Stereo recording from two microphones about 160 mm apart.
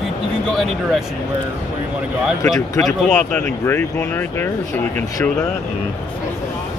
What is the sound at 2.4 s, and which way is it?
Speech, 20° left (ahead or behind).